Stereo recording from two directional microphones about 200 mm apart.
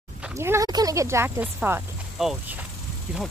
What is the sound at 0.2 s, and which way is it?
Speech, 10° right (ahead or behind).